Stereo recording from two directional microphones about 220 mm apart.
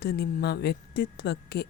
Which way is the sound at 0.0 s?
45° left (ahead or behind).